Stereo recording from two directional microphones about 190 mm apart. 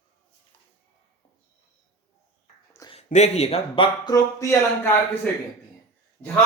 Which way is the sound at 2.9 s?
35° left (ahead or behind).